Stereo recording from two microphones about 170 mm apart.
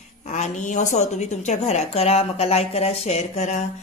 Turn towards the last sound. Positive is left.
turn(degrees=45)  # may be behind; listen again after turning